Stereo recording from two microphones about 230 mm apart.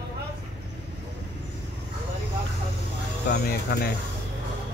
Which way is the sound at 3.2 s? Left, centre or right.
Left.